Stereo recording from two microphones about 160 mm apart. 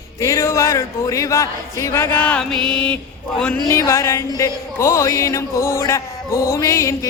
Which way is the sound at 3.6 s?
20° left (ahead or behind).